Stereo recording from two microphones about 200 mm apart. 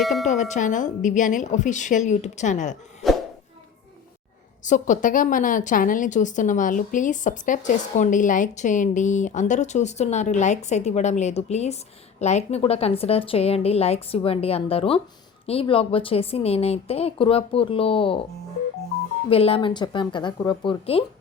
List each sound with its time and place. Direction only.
0.0 s a sound: centre (ahead or behind)
0.3 s a woman's voice: 35° left (ahead or behind)
4.6 s a woman's voice: 40° left (ahead or behind)
19.3 s a woman's voice: 30° left (ahead or behind)